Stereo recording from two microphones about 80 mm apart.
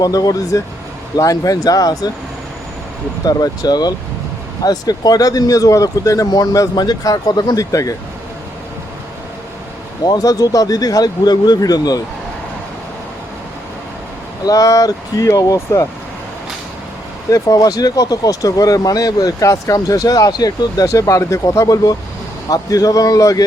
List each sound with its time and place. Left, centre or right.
0.0 s speech: left
3.2 s speech: left
10.0 s speech: left
14.4 s speech: left
17.3 s speech: left
20.8 s speech: left